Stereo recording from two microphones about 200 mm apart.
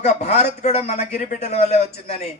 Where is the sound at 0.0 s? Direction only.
35° left (ahead or behind).